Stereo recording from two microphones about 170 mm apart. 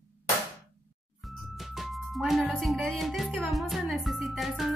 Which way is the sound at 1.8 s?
Centre (ahead or behind).